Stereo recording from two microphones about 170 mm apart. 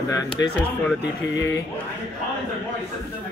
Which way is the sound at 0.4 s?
15° left (ahead or behind).